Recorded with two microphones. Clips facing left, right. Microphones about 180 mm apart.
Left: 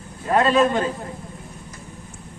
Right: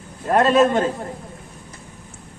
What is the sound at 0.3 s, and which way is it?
Speech, 50° right (ahead or behind).